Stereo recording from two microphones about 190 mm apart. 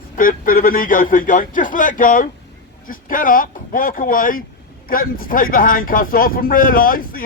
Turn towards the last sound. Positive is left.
turn(degrees=50)  # may be behind; listen again after turning